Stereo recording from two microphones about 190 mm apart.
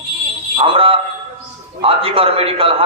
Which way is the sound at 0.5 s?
30° right (ahead or behind).